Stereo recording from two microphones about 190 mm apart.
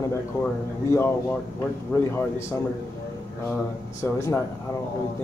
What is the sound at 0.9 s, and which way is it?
Speech, 10° left (ahead or behind).